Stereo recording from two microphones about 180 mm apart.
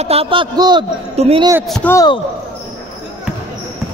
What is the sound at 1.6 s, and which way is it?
Speech, centre (ahead or behind).